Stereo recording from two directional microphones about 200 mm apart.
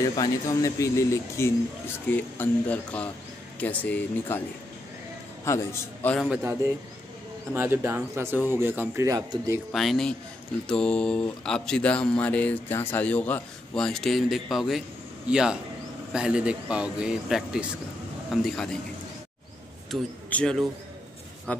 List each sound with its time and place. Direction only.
0.1 s speech: 20° left (ahead or behind)
5.4 s speech: 15° left (ahead or behind)
7.5 s speech: 10° right (ahead or behind)
9.7 s speech: centre (ahead or behind)
19.9 s speech: 5° left (ahead or behind)